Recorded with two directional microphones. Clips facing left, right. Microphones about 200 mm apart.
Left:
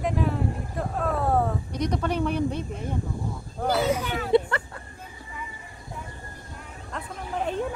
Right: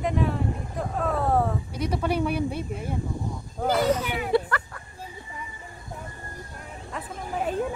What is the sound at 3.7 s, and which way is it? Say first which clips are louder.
Speech: right 1 dB; 10° left (ahead or behind).